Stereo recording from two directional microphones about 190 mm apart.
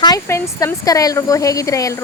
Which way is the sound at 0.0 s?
15° left (ahead or behind).